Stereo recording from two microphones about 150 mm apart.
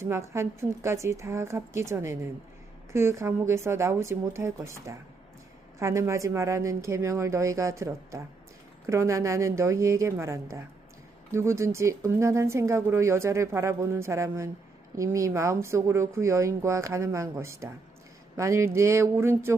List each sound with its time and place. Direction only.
0.0 s a woman's voice: 15° right (ahead or behind)